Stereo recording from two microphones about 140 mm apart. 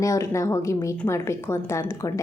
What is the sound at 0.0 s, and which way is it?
A woman's voice, 20° left (ahead or behind).